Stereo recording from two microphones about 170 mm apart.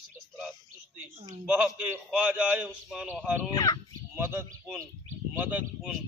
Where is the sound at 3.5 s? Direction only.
20° left (ahead or behind).